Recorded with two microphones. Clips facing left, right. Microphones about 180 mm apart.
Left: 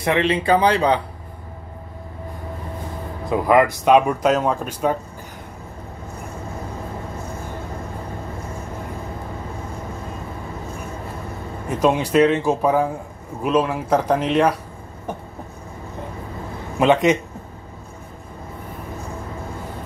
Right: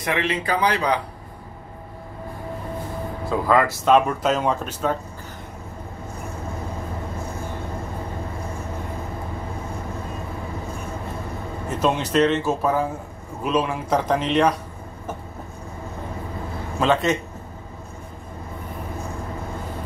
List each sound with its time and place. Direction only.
0.0 s speech: 30° left (ahead or behind)
3.3 s speech: 15° left (ahead or behind)
11.8 s speech: 10° left (ahead or behind)
16.8 s speech: 15° left (ahead or behind)